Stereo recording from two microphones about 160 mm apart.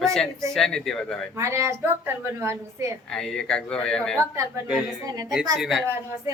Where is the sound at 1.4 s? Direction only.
20° right (ahead or behind).